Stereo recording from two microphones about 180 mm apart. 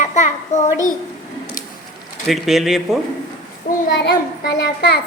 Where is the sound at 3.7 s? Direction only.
60° left (ahead or behind).